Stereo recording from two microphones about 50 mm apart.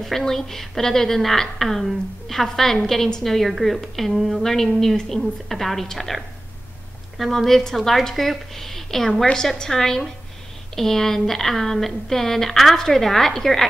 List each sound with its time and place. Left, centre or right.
0.0 s a woman's voice: centre
9.2 s a woman's voice: centre